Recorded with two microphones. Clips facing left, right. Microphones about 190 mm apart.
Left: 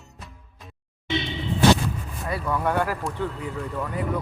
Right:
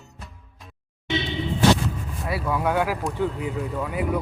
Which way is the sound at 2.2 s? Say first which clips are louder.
Right 1 dB; 5° right (ahead or behind).